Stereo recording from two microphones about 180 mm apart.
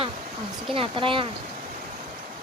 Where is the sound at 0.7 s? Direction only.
30° right (ahead or behind).